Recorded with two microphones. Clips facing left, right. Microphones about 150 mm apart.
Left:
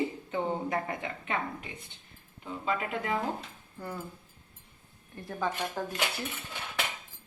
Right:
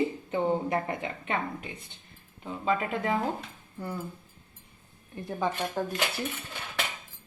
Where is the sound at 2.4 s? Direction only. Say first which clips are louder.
Right 4 dB; 35° right (ahead or behind).